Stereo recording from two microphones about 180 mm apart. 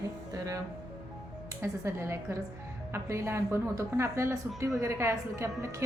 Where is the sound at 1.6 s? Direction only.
15° right (ahead or behind).